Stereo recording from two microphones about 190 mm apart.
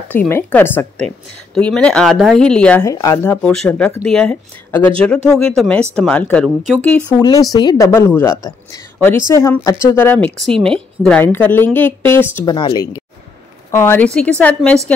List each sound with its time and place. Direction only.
0.1 s a woman's voice: 10° left (ahead or behind)
2.8 s a woman's voice: 15° left (ahead or behind)
3.4 s a woman's voice: 5° left (ahead or behind)
7.2 s a woman's voice: 15° left (ahead or behind)
12.4 s a woman's voice: 20° left (ahead or behind); by 14.8 s 5° left (ahead or behind)